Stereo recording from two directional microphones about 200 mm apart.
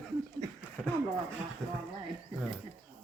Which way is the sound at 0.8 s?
5° right (ahead or behind).